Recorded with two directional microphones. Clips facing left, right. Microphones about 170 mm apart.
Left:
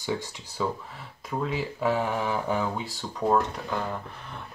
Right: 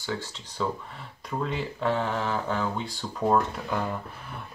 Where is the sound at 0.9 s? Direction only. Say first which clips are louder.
Even; 5° left (ahead or behind).